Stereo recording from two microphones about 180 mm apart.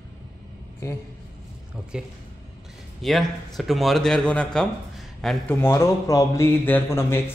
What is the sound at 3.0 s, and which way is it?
Speech, centre (ahead or behind).